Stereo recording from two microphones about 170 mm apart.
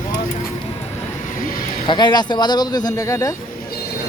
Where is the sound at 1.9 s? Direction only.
25° left (ahead or behind).